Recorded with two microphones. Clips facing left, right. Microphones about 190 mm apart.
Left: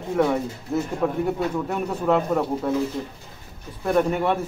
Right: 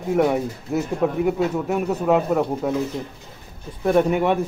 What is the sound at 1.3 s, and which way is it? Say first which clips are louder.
Speech: right 3 dB; 10° right (ahead or behind).